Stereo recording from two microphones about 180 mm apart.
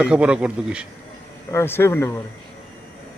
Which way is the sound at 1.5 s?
15° left (ahead or behind).